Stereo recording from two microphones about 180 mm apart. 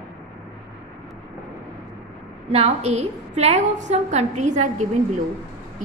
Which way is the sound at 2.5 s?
35° right (ahead or behind).